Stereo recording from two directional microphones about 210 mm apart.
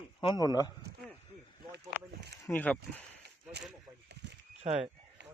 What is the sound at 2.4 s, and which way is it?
Speech, 10° left (ahead or behind).